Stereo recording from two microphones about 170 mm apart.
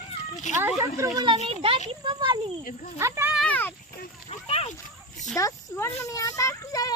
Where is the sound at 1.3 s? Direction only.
40° right (ahead or behind).